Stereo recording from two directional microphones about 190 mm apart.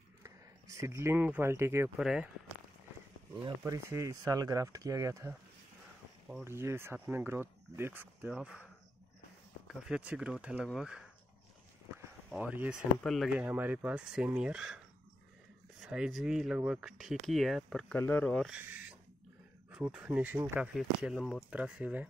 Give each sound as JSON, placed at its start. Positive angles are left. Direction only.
{"t": 0.2, "sound": "speech", "side_deg": -15}
{"t": 3.4, "sound": "speech", "side_deg": -15}
{"t": 6.4, "sound": "speech", "side_deg": -15}
{"t": 9.7, "sound": "speech", "side_deg": -5}
{"t": 12.3, "sound": "speech", "side_deg": -5}
{"t": 15.8, "sound": "speech", "side_deg": 0}
{"t": 18.6, "sound": "speech", "side_deg": -10}